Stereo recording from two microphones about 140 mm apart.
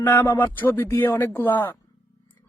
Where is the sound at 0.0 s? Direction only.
15° left (ahead or behind).